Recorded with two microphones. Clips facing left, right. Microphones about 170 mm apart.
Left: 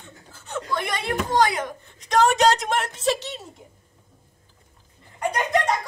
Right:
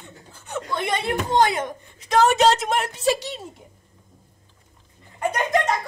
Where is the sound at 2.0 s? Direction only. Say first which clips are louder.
Right 1 dB; 5° right (ahead or behind).